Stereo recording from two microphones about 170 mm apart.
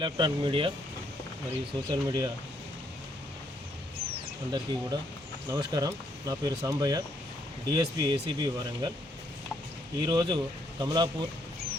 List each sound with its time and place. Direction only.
0.0 s speech: 25° right (ahead or behind)
1.9 s speech: 25° right (ahead or behind)
4.5 s speech: 25° right (ahead or behind)
10.0 s speech: 25° right (ahead or behind)